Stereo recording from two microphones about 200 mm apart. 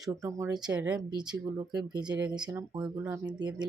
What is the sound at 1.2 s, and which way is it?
Speech, 20° right (ahead or behind).